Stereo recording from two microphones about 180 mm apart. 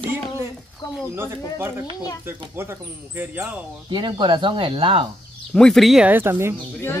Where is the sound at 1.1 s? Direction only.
15° right (ahead or behind).